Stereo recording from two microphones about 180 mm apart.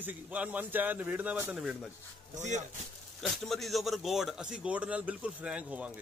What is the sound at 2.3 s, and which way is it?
Speech, 40° right (ahead or behind).